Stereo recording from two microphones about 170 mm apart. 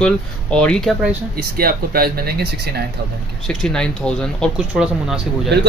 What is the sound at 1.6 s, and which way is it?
Speech, 60° right (ahead or behind).